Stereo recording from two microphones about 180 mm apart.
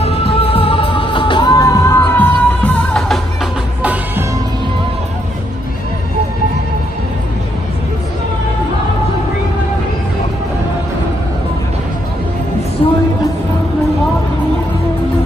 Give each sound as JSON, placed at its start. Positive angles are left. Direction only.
{"t": 0.0, "sound": "music", "side_deg": 30}
{"t": 3.8, "sound": "music", "side_deg": -10}
{"t": 12.8, "sound": "a sound", "side_deg": 30}